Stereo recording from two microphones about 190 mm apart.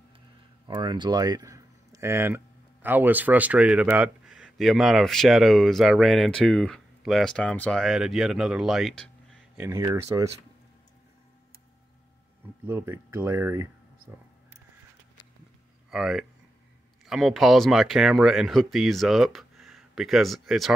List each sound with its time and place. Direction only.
0.7 s speech: 25° right (ahead or behind); by 9.4 s 5° left (ahead or behind)
9.6 s speech: 15° right (ahead or behind)
12.6 s speech: 10° right (ahead or behind)
15.9 s speech: centre (ahead or behind)